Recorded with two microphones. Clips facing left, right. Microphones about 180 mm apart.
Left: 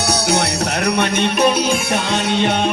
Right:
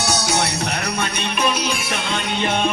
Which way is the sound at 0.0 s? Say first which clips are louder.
Left 3 dB; 65° left (ahead or behind).